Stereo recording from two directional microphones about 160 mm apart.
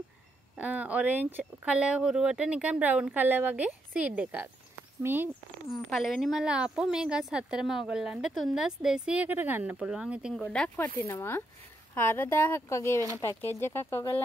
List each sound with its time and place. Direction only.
0.6 s speech: 10° right (ahead or behind)
5.7 s speech: centre (ahead or behind)
10.3 s speech: 5° left (ahead or behind)